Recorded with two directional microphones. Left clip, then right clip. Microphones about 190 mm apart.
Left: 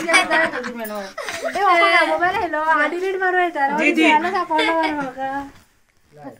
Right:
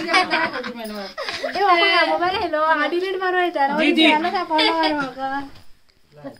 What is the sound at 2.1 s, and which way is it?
A woman's voice, 5° right (ahead or behind).